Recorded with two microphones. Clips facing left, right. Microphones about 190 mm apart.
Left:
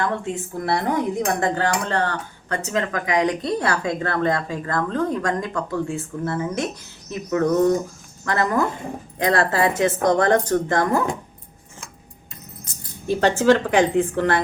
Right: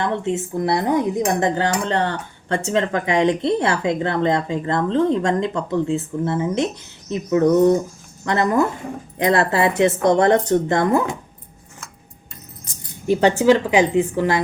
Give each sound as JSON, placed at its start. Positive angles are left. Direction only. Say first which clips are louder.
{"t": 0.0, "sound": "a woman's voice", "louder": "right 3 dB", "side_deg": -25}
{"t": 13.1, "sound": "a woman's voice", "louder": "right 2 dB", "side_deg": -15}